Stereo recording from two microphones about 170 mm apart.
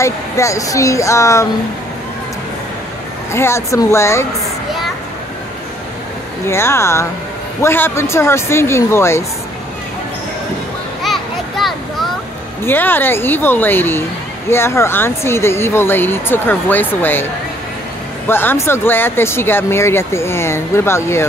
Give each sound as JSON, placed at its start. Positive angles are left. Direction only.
{"t": 0.0, "sound": "speech", "side_deg": 15}
{"t": 3.3, "sound": "speech", "side_deg": 15}
{"t": 6.4, "sound": "speech", "side_deg": 15}
{"t": 11.0, "sound": "children playing", "side_deg": 0}
{"t": 12.6, "sound": "speech", "side_deg": 10}
{"t": 18.3, "sound": "speech", "side_deg": 15}